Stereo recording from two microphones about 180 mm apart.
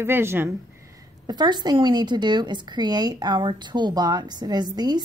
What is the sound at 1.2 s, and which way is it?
Speech, 25° right (ahead or behind).